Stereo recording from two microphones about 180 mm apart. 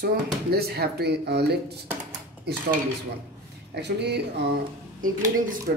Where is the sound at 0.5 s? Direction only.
60° right (ahead or behind).